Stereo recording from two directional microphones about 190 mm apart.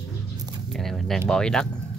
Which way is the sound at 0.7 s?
Centre (ahead or behind).